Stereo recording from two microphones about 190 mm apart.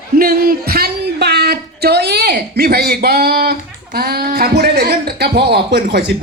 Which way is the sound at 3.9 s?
55° right (ahead or behind).